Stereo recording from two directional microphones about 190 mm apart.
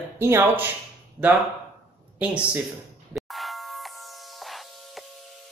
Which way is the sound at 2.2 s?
5° right (ahead or behind).